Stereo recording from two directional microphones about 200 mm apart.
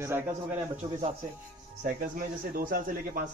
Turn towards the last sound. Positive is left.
turn(degrees=-45)  # may be behind; listen again after turning